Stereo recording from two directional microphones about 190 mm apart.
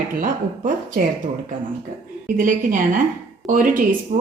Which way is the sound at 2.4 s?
45° right (ahead or behind).